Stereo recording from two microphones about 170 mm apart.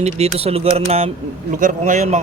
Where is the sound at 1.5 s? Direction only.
50° right (ahead or behind).